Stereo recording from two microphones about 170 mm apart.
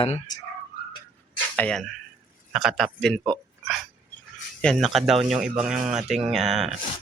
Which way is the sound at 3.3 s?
Centre (ahead or behind).